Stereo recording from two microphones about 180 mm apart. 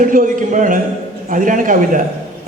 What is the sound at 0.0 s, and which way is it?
Speech, 50° right (ahead or behind).